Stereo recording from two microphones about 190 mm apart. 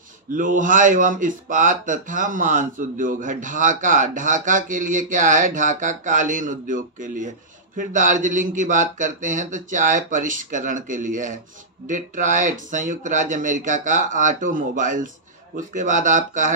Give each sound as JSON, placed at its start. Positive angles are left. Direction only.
{"t": 0.3, "sound": "a man's voice", "side_deg": -45}